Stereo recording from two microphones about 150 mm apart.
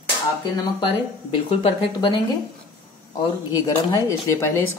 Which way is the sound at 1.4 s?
35° left (ahead or behind).